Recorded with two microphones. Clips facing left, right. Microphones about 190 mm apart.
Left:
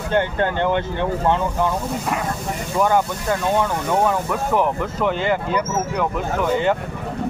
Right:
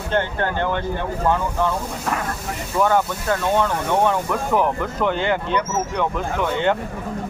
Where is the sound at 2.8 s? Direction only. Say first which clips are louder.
Even; 10° left (ahead or behind).